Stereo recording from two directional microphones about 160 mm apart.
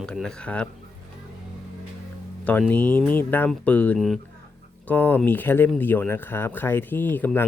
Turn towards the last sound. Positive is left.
turn(degrees=10)  # may be behind; listen again after turning